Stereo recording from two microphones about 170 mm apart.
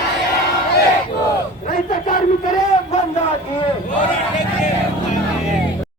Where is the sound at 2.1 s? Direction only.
50° left (ahead or behind).